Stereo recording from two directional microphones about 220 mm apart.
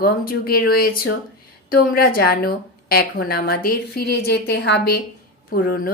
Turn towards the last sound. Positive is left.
turn(degrees=45)  # may be behind; listen again after turning